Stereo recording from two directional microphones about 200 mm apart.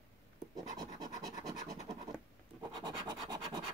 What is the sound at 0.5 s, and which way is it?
Scratch, 20° right (ahead or behind).